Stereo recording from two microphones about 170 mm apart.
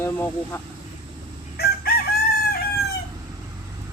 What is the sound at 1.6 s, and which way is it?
Chicken, 65° left (ahead or behind).